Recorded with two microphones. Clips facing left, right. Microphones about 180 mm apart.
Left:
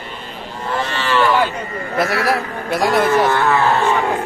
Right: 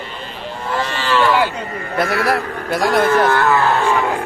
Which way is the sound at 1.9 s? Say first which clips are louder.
Even; centre (ahead or behind).